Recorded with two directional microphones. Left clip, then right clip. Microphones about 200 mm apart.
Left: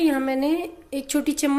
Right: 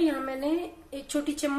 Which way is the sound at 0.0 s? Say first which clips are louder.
Left 6 dB; 50° left (ahead or behind).